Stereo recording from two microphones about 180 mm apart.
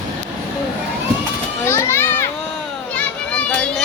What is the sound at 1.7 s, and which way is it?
Children playing, 15° left (ahead or behind).